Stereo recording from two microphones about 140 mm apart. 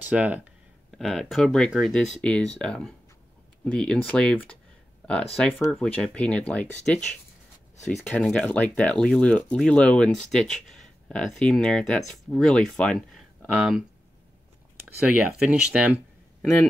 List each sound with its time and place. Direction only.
0.0 s speech: 10° right (ahead or behind); by 7.0 s 10° left (ahead or behind)
7.7 s a sound: 55° left (ahead or behind)
8.1 s speech: 10° left (ahead or behind)
15.3 s speech: 5° right (ahead or behind)